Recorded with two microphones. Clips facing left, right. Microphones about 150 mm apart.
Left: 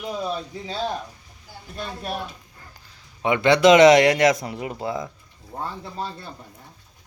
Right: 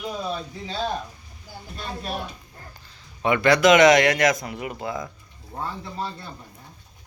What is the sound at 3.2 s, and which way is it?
Speech, 20° left (ahead or behind).